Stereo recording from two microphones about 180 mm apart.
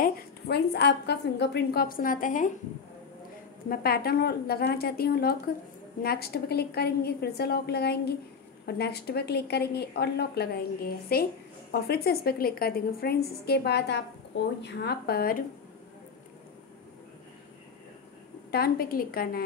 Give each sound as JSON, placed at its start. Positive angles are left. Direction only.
{"t": 0.0, "sound": "a woman's voice", "side_deg": 65}
{"t": 3.6, "sound": "a woman's voice", "side_deg": 55}
{"t": 18.5, "sound": "a woman's voice", "side_deg": 55}